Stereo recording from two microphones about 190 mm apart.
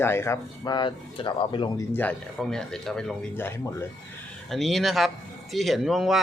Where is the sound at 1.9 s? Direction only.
10° left (ahead or behind).